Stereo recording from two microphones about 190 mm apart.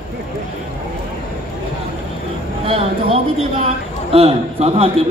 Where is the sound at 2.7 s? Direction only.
30° right (ahead or behind).